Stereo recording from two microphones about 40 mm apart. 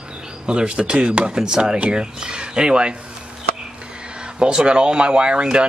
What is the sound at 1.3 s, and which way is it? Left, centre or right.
Speech, centre.